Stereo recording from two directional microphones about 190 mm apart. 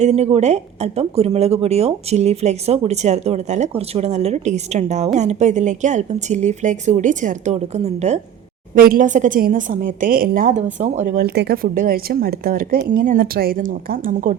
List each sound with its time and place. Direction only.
0.0 s speech: 35° right (ahead or behind)
8.7 s speech: 45° right (ahead or behind)
11.3 s speech: 55° right (ahead or behind)